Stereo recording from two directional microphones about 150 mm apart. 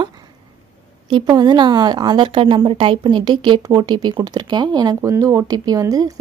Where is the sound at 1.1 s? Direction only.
30° right (ahead or behind).